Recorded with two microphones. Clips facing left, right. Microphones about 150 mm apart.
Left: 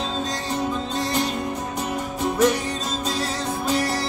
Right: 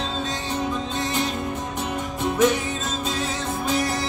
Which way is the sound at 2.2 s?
Centre (ahead or behind).